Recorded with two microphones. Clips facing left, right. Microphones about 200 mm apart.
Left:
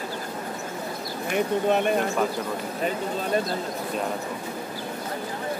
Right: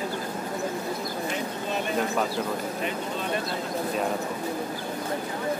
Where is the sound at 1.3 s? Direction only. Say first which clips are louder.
Left 7 dB; 60° left (ahead or behind).